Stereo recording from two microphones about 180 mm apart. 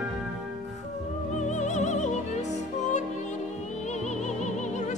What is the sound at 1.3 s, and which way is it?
Music, 40° left (ahead or behind).